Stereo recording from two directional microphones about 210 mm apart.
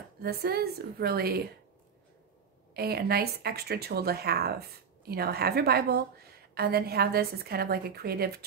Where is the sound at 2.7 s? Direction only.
45° right (ahead or behind).